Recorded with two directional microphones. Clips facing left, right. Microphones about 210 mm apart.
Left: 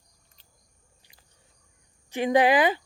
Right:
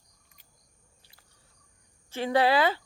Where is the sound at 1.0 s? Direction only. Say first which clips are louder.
Left 2 dB; 15° left (ahead or behind).